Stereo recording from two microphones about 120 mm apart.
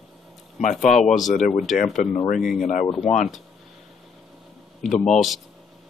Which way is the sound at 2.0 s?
90° left.